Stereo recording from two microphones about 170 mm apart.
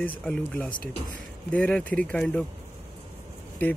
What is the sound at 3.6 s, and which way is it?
Speech, 10° left (ahead or behind).